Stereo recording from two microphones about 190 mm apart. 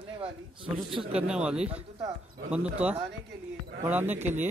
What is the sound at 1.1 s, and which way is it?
Speech, 5° right (ahead or behind).